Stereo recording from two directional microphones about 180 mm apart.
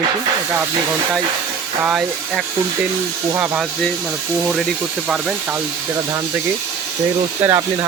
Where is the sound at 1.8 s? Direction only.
5° right (ahead or behind).